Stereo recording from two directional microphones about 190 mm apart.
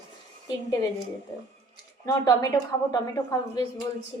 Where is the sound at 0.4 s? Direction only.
20° left (ahead or behind).